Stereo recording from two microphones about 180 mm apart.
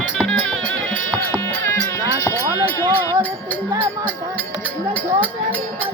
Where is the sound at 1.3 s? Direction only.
10° left (ahead or behind).